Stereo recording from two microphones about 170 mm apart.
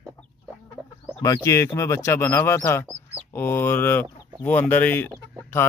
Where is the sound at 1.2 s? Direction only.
15° left (ahead or behind).